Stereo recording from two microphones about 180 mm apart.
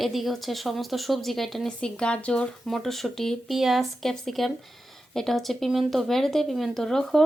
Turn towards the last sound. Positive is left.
turn(degrees=0)  # may be behind; listen again after turning